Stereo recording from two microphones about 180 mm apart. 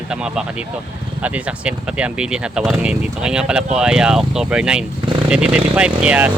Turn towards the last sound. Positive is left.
turn(degrees=-10)  # may be behind; listen again after turning